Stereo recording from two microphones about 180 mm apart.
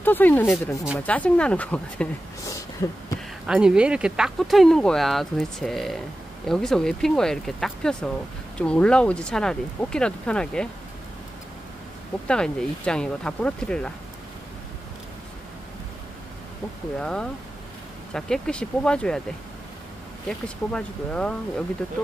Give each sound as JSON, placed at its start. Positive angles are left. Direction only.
{"t": 0.0, "sound": "speech", "side_deg": 10}
{"t": 3.4, "sound": "speech", "side_deg": -5}
{"t": 12.3, "sound": "speech", "side_deg": 5}
{"t": 17.0, "sound": "speech", "side_deg": 5}
{"t": 20.2, "sound": "speech", "side_deg": 5}